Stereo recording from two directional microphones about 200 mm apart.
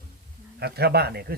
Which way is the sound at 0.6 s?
55° right (ahead or behind).